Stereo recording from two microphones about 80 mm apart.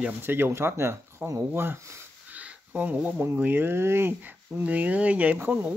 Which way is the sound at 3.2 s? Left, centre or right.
Right.